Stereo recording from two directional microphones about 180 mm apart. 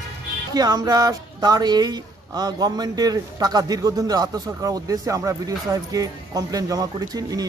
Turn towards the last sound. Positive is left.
turn(degrees=-20)  # may be behind; listen again after turning